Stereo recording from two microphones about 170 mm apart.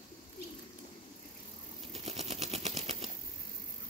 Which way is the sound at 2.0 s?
40° right (ahead or behind).